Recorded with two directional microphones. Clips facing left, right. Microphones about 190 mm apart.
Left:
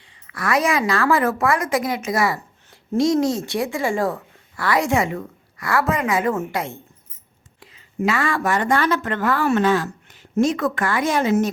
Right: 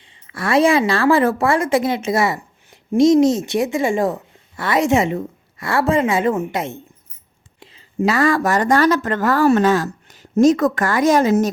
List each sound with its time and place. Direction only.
0.0 s a woman's voice: 25° right (ahead or behind)